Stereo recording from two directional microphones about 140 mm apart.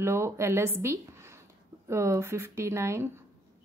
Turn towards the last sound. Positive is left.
turn(degrees=-20)  # may be behind; listen again after turning